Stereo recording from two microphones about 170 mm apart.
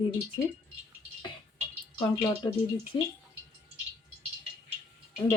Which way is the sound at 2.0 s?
15° left (ahead or behind).